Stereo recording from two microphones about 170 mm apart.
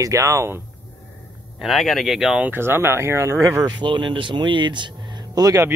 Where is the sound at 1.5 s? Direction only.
Centre (ahead or behind); by 5.7 s 20° right (ahead or behind).